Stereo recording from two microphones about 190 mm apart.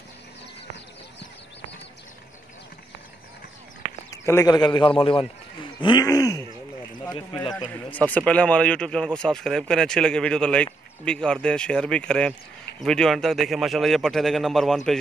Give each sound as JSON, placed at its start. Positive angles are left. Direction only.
{"t": 4.1, "sound": "a man's voice", "side_deg": 15}
{"t": 7.3, "sound": "speech", "side_deg": 5}